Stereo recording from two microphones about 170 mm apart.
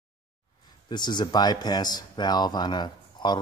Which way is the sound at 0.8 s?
25° left (ahead or behind).